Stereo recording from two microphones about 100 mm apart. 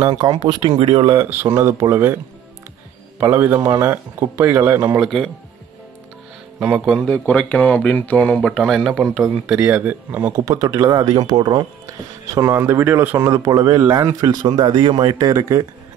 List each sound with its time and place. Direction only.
0.1 s speech: 45° right (ahead or behind); by 1.0 s 60° right (ahead or behind)
1.2 s speech: 20° right (ahead or behind)
1.5 s speech: 30° right (ahead or behind)
3.2 s speech: 25° right (ahead or behind)
5.0 s speech: 5° right (ahead or behind)
6.6 s speech: 10° right (ahead or behind)
7.1 s speech: 15° left (ahead or behind)
8.6 s speech: centre (ahead or behind); by 10.4 s 20° right (ahead or behind)
10.4 s speech: 35° right (ahead or behind)
12.4 s speech: 30° right (ahead or behind); by 15.1 s 50° right (ahead or behind)
15.1 s speech: 30° right (ahead or behind)